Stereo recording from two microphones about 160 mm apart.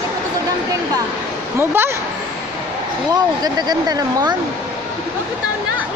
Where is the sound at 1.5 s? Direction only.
15° right (ahead or behind).